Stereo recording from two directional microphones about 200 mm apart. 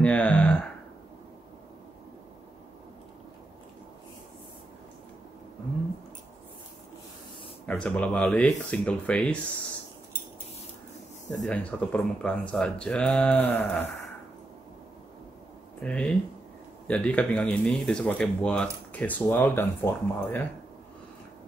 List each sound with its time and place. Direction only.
0.0 s a sound: 5° left (ahead or behind)
7.6 s speech: 5° left (ahead or behind)
11.4 s speech: 5° left (ahead or behind)
15.8 s speech: 5° left (ahead or behind)